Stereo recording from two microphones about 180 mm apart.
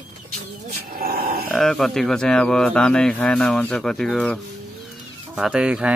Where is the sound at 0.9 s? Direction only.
55° right (ahead or behind).